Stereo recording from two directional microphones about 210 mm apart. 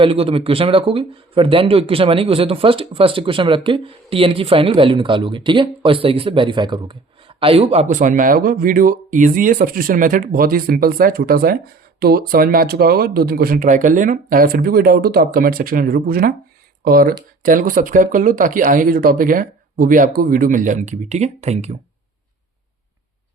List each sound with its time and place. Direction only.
0.0 s speech: 25° right (ahead or behind)